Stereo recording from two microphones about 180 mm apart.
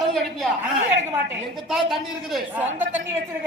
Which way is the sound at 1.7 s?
Centre (ahead or behind).